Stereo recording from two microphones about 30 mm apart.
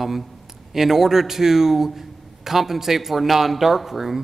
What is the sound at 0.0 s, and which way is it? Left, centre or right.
A man's voice, centre.